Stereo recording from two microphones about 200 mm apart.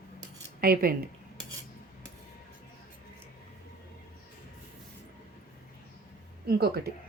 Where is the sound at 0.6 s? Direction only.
45° right (ahead or behind).